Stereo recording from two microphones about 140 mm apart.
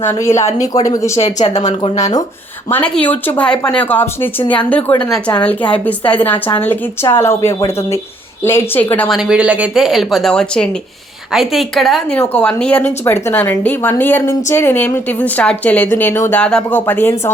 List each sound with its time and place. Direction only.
0.0 s speech: 20° left (ahead or behind)
1.2 s speech: 55° left (ahead or behind)
2.6 s a woman's voice: 10° left (ahead or behind)
9.0 s speech: 5° right (ahead or behind)
12.2 s a woman's voice: 10° left (ahead or behind)